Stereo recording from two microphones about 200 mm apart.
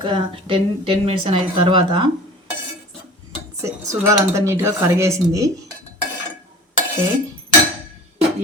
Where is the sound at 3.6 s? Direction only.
15° right (ahead or behind).